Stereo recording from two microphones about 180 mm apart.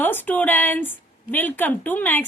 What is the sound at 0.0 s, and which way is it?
A woman's voice, 10° left (ahead or behind).